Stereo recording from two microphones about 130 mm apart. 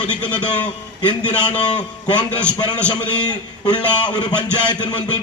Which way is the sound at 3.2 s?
35° left (ahead or behind).